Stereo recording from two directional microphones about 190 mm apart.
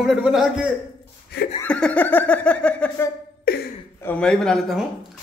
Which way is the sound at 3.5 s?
55° left (ahead or behind).